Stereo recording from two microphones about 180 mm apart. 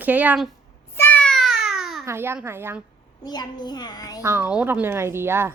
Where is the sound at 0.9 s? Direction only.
10° left (ahead or behind).